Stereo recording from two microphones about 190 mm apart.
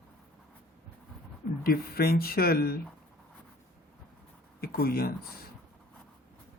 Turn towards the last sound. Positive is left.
turn(degrees=50)  # may be behind; listen again after turning